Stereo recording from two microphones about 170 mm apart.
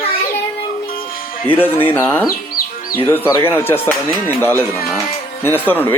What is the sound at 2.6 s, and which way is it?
Music, 60° left (ahead or behind).